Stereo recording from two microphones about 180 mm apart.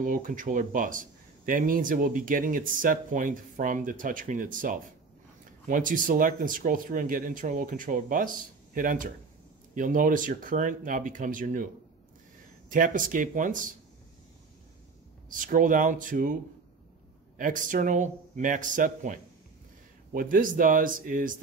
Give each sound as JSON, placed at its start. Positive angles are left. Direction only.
{"t": 0.0, "sound": "speech", "side_deg": -45}
{"t": 15.2, "sound": "speech", "side_deg": -45}
{"t": 17.4, "sound": "speech", "side_deg": -50}